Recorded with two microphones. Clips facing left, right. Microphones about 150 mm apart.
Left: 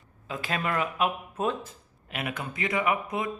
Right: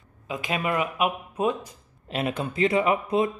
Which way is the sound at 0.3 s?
15° right (ahead or behind).